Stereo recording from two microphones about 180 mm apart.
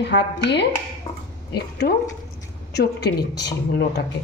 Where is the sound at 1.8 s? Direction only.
55° left (ahead or behind).